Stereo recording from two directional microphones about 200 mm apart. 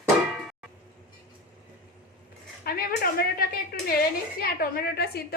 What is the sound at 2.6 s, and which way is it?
A woman's voice, 50° left (ahead or behind).